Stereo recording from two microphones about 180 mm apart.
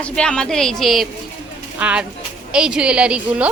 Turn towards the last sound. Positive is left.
turn(degrees=-5)  # may be behind; listen again after turning